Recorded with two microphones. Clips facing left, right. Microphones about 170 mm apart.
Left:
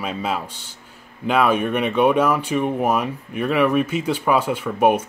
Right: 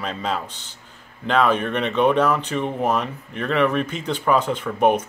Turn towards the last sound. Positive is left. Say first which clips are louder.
# left 1 dB
turn(degrees=10)  # may be behind; listen again after turning